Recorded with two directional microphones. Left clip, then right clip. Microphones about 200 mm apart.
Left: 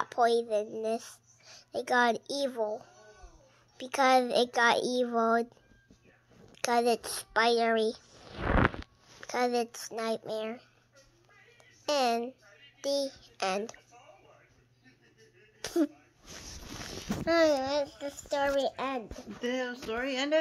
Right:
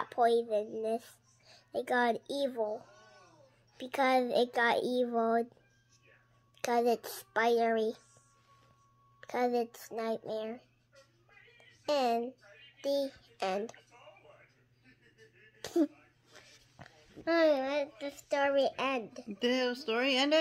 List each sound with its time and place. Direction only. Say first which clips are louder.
0.0 s a child's voice: left 2 dB; 10° right (ahead or behind)
6.5 s a child's voice: left 2 dB; 10° right (ahead or behind)
9.2 s a child's voice: left 2 dB; 10° right (ahead or behind)
11.8 s a child's voice: left 2 dB; 5° right (ahead or behind)
15.6 s a sound: left 1 dB; 10° right (ahead or behind)
17.2 s a child's voice: left 2 dB; 15° left (ahead or behind)
17.9 s speech: left 1 dB; 5° left (ahead or behind)
19.4 s speech: right 2 dB; 45° right (ahead or behind)
20.1 s speech: right 3 dB; 30° right (ahead or behind)